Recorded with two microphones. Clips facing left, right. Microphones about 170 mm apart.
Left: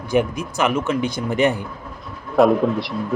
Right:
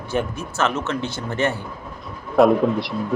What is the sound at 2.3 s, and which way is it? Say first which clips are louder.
Speech: even; centre (ahead or behind).